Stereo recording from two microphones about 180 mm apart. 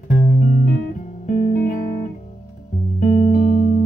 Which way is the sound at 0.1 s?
45° left (ahead or behind).